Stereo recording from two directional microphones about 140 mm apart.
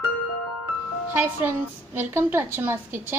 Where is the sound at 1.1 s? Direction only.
15° right (ahead or behind).